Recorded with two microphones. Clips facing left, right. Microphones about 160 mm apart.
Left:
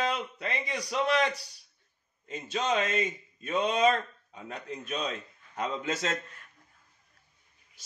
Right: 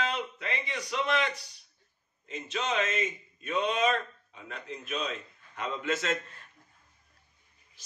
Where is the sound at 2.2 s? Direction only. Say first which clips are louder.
Left 3 dB; 40° left (ahead or behind).